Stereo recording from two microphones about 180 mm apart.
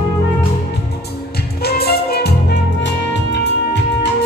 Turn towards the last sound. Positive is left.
turn(degrees=75)  # may be behind; listen again after turning